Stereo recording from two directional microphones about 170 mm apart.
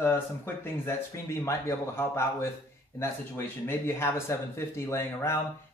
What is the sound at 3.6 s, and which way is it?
Speech, 15° left (ahead or behind).